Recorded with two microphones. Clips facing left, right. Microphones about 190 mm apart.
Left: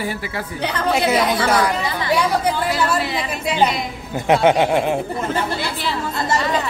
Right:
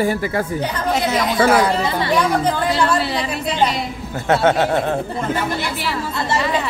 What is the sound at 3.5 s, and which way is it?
Speech, 10° left (ahead or behind).